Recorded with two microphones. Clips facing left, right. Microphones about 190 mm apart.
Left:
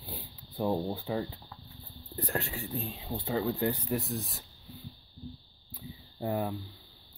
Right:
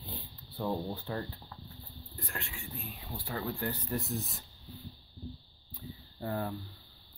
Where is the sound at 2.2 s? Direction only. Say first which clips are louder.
Left 9 dB; 40° left (ahead or behind); by 4.0 s 10° left (ahead or behind).